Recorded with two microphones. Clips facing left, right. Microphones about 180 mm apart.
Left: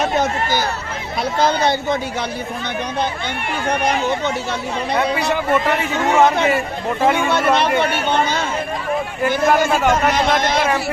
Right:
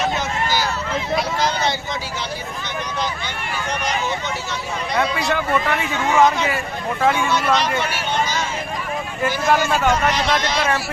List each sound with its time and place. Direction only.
0.0 s run: 50° left (ahead or behind)
1.1 s speech: 55° left (ahead or behind)
3.7 s speech: 55° left (ahead or behind)
6.1 s speech: 55° left (ahead or behind)